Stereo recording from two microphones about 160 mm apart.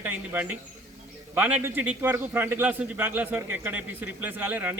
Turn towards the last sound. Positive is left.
turn(degrees=-10)  # may be behind; listen again after turning